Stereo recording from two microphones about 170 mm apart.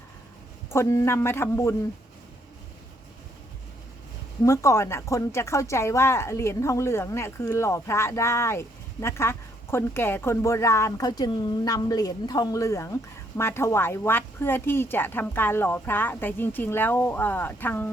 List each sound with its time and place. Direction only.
0.7 s a woman's voice: 15° left (ahead or behind)
4.4 s a woman's voice: 15° left (ahead or behind)